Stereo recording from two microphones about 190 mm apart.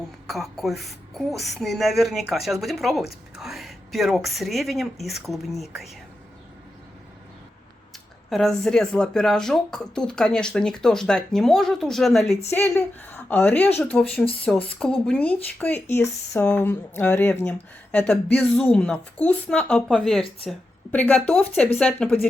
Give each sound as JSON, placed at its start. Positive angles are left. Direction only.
{"t": 0.3, "sound": "a woman's voice", "side_deg": 0}
{"t": 8.3, "sound": "a woman's voice", "side_deg": 0}